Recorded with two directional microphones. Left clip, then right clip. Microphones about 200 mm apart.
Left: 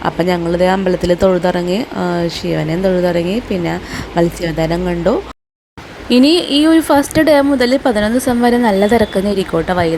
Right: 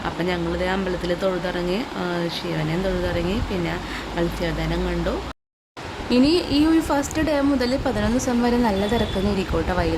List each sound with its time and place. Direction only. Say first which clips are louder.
0.0 s speech: left 9 dB; 25° left (ahead or behind)